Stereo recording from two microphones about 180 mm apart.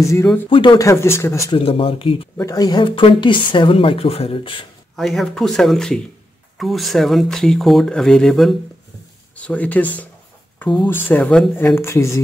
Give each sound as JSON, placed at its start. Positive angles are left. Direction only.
{"t": 0.0, "sound": "speech", "side_deg": 15}
{"t": 0.5, "sound": "speech", "side_deg": 25}
{"t": 1.6, "sound": "speech", "side_deg": 30}
{"t": 2.3, "sound": "speech", "side_deg": 20}
{"t": 4.9, "sound": "speech", "side_deg": 0}